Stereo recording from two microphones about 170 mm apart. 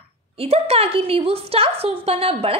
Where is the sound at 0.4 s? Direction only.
35° right (ahead or behind).